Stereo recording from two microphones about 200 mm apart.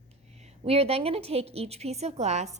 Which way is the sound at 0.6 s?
30° right (ahead or behind).